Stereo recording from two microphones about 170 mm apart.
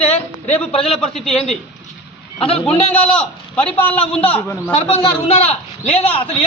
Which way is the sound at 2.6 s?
5° left (ahead or behind).